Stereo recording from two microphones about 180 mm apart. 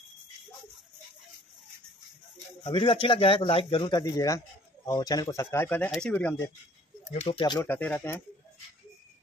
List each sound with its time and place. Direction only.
2.3 s speech: 30° left (ahead or behind); by 6.5 s 10° left (ahead or behind)
7.2 s speech: 25° left (ahead or behind)
7.6 s speech: 10° left (ahead or behind)